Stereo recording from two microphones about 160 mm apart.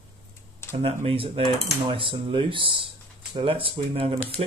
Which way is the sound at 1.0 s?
35° right (ahead or behind).